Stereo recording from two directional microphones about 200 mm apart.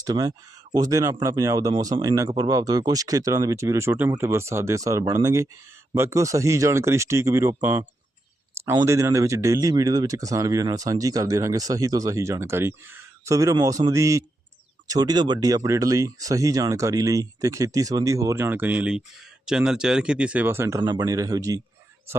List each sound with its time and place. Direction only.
0.0 s speech: 20° right (ahead or behind)